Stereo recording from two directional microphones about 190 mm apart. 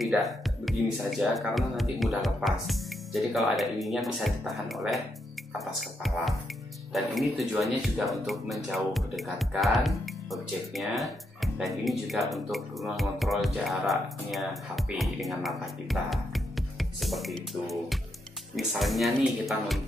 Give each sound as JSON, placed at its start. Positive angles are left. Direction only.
{"t": 0.0, "sound": "speech", "side_deg": 0}